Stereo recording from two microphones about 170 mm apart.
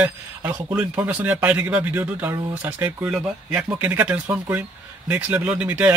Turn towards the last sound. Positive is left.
turn(degrees=-10)  # may be behind; listen again after turning